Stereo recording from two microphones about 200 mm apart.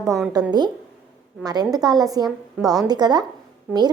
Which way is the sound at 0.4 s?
20° right (ahead or behind).